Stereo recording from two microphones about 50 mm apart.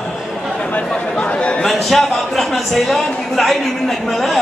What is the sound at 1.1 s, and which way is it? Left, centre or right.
Speech, left.